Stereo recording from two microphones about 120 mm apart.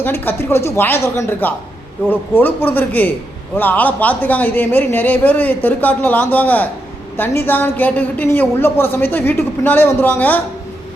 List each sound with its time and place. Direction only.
0.0 s a woman's voice: 20° left (ahead or behind)